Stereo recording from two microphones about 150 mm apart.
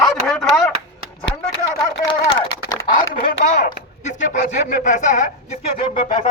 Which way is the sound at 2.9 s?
65° left (ahead or behind).